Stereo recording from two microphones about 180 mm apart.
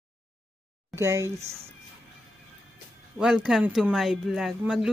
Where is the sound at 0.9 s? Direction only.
15° right (ahead or behind).